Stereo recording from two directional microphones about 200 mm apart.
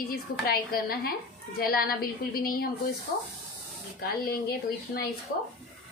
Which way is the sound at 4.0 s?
50° left (ahead or behind).